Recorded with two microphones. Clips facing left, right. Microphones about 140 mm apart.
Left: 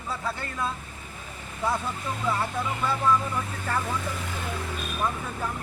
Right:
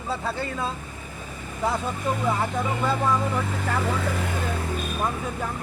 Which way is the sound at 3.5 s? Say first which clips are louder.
Right 3 dB; 90° right.